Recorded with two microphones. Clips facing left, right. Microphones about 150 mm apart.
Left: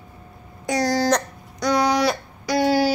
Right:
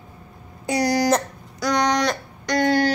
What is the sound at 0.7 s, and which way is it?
Speech, 15° right (ahead or behind).